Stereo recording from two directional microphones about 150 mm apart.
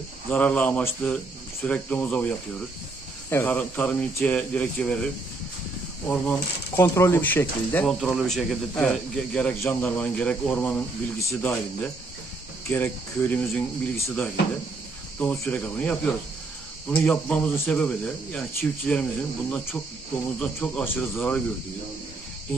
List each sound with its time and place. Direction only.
0.3 s speech: 10° left (ahead or behind)
8.0 s speech: centre (ahead or behind)
20.3 s speech: 5° left (ahead or behind)